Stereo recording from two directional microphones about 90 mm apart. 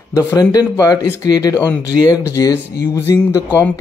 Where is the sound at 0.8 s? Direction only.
40° left (ahead or behind).